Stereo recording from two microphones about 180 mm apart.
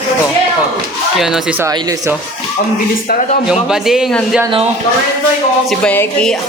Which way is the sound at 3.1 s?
45° left (ahead or behind).